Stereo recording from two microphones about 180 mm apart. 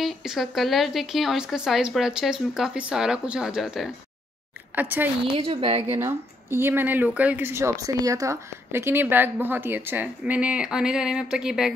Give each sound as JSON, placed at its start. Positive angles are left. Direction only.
{"t": 0.0, "sound": "a woman's voice", "side_deg": 0}
{"t": 5.3, "sound": "a woman's voice", "side_deg": -30}
{"t": 5.9, "sound": "speech", "side_deg": -15}